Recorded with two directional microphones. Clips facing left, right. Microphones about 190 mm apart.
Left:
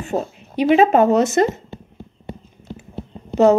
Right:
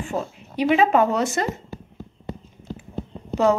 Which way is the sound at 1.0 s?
20° left (ahead or behind).